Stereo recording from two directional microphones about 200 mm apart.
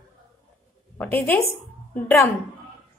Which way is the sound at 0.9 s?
10° left (ahead or behind).